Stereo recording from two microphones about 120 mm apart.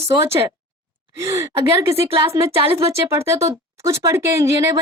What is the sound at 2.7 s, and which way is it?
Speech, 25° right (ahead or behind).